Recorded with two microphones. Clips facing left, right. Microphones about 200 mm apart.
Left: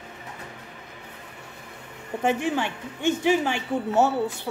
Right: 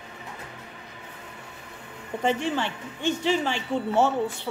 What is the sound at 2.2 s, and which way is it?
A woman's voice, 10° left (ahead or behind).